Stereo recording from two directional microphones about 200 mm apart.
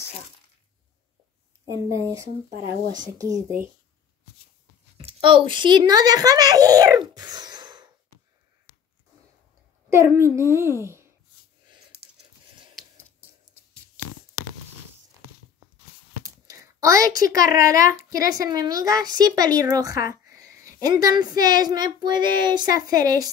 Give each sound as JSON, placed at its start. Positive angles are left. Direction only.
{"t": 1.7, "sound": "speech", "side_deg": -15}
{"t": 4.9, "sound": "a child's voice", "side_deg": -25}
{"t": 9.8, "sound": "speech", "side_deg": -15}
{"t": 16.3, "sound": "a woman's voice", "side_deg": -15}